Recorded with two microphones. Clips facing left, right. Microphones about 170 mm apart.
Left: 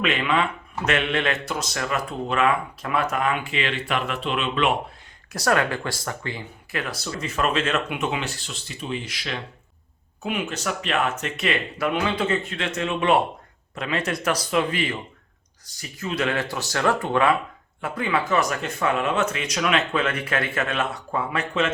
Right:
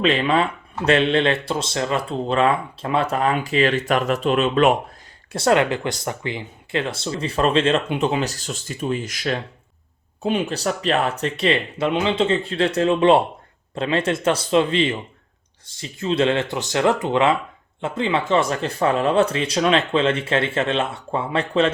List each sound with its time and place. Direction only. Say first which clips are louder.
0.0 s speech: right 4 dB; 30° right (ahead or behind)
5.3 s speech: right 5 dB; 25° right (ahead or behind); by 9.4 s 45° right (ahead or behind)
10.2 s speech: right 5 dB; 30° right (ahead or behind)